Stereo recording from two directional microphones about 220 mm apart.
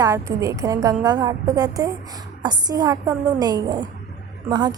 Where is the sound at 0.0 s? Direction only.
15° right (ahead or behind).